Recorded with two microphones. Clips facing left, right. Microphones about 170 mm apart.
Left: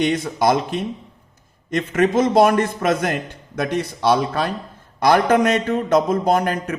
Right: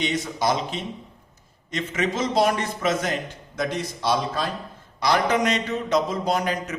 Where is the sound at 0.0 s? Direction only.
55° left (ahead or behind).